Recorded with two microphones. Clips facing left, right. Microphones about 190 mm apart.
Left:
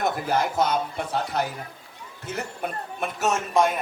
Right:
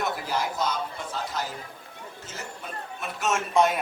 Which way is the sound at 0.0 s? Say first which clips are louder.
Left 4 dB; 55° left (ahead or behind).